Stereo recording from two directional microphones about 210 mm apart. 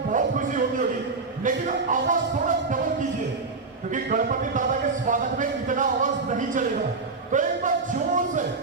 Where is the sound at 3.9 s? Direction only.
40° right (ahead or behind).